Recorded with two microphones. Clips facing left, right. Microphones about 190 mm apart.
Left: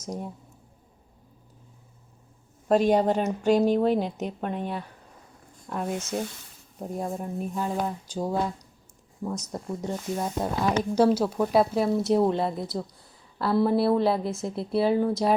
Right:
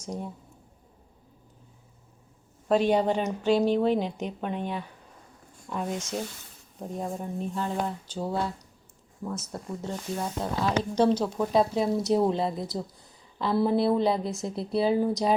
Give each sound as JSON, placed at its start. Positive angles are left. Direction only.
{"t": 2.6, "sound": "speech", "side_deg": 40}
{"t": 4.2, "sound": "speech", "side_deg": 5}